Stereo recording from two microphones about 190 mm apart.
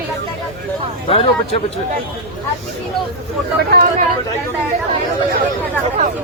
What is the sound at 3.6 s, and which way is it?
Speech, 55° right (ahead or behind).